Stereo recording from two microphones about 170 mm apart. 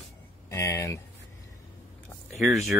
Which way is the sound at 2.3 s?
Centre (ahead or behind).